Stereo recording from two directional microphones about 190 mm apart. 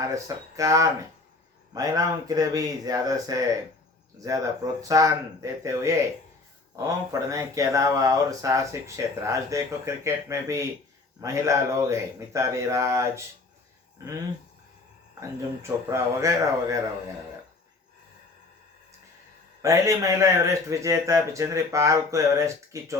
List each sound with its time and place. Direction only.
0.0 s speech: 15° right (ahead or behind)
15.2 s speech: 15° right (ahead or behind)
19.6 s speech: 15° right (ahead or behind)